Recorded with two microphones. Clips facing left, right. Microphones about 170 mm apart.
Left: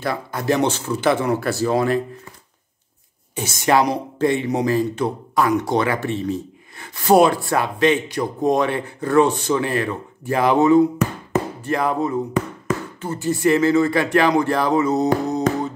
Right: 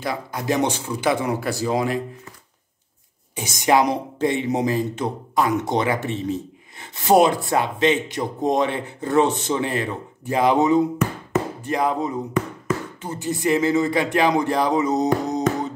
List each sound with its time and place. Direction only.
0.0 s speech: 15° right (ahead or behind)
3.3 s speech: 15° right (ahead or behind)
15.2 s music: 20° right (ahead or behind)